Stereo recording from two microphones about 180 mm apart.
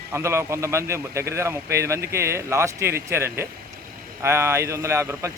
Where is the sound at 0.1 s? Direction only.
15° right (ahead or behind).